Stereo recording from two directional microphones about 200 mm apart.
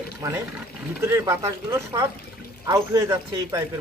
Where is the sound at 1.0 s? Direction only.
15° right (ahead or behind).